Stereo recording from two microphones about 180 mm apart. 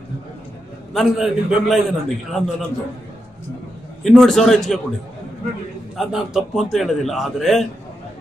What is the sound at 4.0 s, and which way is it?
Speech, centre (ahead or behind).